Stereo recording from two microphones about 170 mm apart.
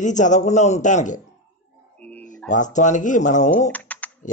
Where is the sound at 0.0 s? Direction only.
45° left (ahead or behind).